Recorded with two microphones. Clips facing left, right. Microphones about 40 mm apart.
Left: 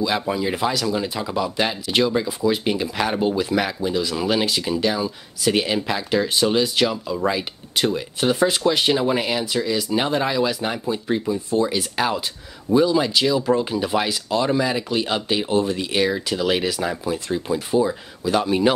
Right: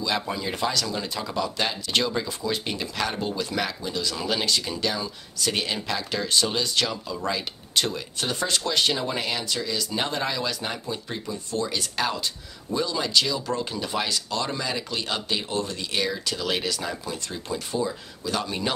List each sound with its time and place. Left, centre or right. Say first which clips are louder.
0.0 s speech: left 6 dB; centre